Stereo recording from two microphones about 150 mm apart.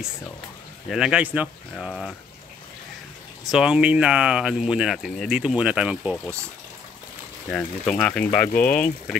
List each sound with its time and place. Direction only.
0.8 s speech: 5° right (ahead or behind)
3.4 s speech: 5° right (ahead or behind)
7.4 s speech: 5° left (ahead or behind)